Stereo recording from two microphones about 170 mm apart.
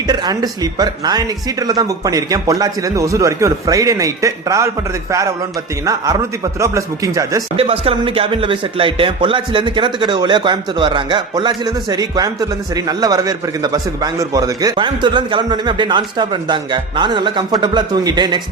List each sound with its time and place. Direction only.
0.1 s a man's voice: 25° right (ahead or behind)
5.8 s a man's voice: 20° right (ahead or behind)
7.5 s a man's voice: 35° right (ahead or behind)